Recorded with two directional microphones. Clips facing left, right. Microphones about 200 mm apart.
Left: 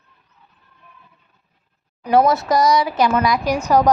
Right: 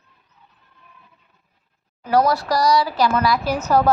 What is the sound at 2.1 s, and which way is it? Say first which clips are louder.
A woman's voice: left 3 dB; 20° left (ahead or behind).